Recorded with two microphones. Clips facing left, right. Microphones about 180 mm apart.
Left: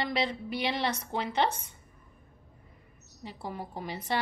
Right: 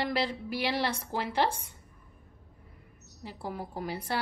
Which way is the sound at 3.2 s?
5° right (ahead or behind).